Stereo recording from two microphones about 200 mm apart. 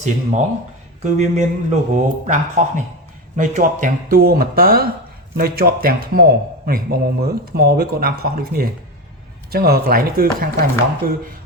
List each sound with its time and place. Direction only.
0.0 s a man's voice: 35° right (ahead or behind)